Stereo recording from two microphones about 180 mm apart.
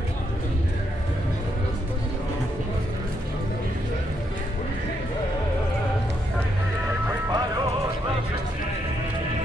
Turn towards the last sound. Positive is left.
turn(degrees=-20)  # may be behind; listen again after turning